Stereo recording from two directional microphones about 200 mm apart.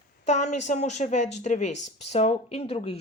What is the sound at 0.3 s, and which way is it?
Speech, 35° left (ahead or behind).